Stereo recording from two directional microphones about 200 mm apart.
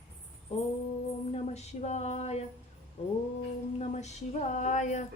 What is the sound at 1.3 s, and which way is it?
Speech, 35° left (ahead or behind).